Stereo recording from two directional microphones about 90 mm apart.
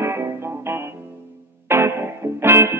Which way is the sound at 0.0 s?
30° right (ahead or behind).